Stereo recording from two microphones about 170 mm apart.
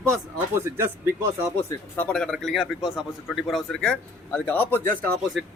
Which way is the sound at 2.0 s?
5° left (ahead or behind).